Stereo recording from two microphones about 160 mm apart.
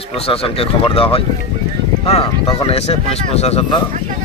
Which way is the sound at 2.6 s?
40° left (ahead or behind).